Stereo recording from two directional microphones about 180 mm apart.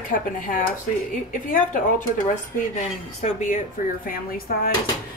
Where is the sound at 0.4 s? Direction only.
50° left (ahead or behind).